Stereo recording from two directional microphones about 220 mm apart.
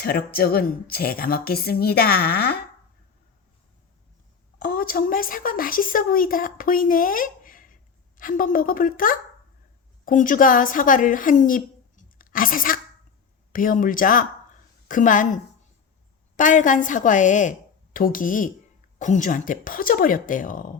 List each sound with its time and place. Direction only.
0.0 s a woman's voice: 45° left (ahead or behind)
4.6 s a woman's voice: 40° left (ahead or behind)
16.4 s speech: 35° left (ahead or behind)